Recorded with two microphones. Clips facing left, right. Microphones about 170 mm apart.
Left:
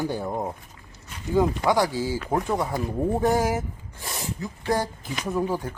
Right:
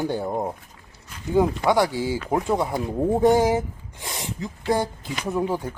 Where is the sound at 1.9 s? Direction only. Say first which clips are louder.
Right 1 dB; 20° right (ahead or behind).